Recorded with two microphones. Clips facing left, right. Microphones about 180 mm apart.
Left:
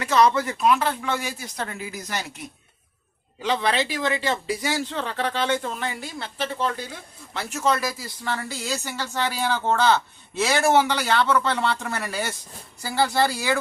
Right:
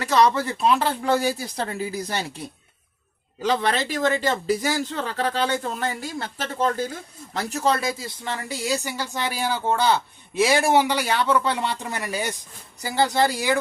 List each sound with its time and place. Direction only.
0.0 s speech: 35° right (ahead or behind)
3.4 s speech: 40° right (ahead or behind); by 13.6 s 15° right (ahead or behind)